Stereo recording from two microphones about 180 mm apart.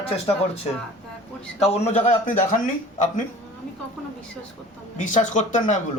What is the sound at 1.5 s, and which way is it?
A man's voice, 35° left (ahead or behind).